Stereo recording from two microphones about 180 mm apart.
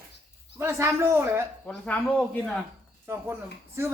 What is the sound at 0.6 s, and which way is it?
Speech, 15° right (ahead or behind).